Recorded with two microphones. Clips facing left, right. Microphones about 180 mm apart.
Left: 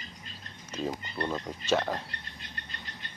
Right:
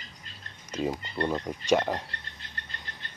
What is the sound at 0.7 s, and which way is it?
Music, 10° right (ahead or behind).